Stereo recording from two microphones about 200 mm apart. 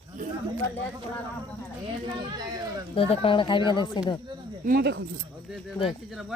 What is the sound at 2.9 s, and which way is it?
Speech, 25° left (ahead or behind).